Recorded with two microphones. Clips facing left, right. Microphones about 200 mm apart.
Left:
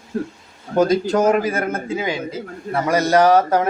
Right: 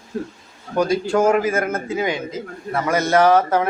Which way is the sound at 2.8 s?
35° left (ahead or behind).